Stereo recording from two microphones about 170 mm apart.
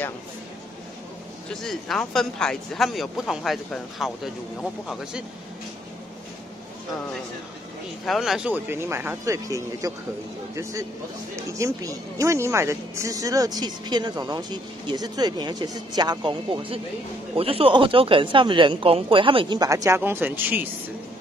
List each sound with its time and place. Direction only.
1.5 s speech: centre (ahead or behind)
8.0 s speech: centre (ahead or behind)